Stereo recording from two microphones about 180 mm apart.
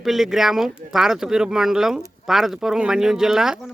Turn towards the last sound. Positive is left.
turn(degrees=0)  # may be behind; listen again after turning